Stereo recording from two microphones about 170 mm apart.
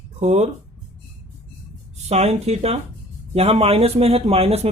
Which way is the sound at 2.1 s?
40° right (ahead or behind).